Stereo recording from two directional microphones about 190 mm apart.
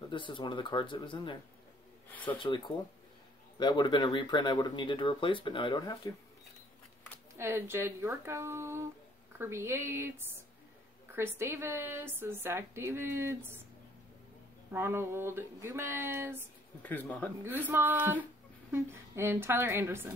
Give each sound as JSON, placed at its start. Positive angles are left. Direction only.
{"t": 0.1, "sound": "speech", "side_deg": 25}
{"t": 7.3, "sound": "a woman's voice", "side_deg": -15}
{"t": 14.7, "sound": "a woman's voice", "side_deg": -15}
{"t": 16.8, "sound": "speech", "side_deg": 10}
{"t": 17.4, "sound": "a woman's voice", "side_deg": -10}